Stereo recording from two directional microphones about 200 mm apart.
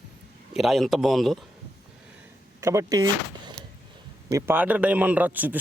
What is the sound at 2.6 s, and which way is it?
Speech, 15° right (ahead or behind).